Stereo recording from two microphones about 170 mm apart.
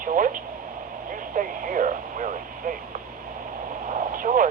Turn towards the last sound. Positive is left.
turn(degrees=-50)  # may be behind; listen again after turning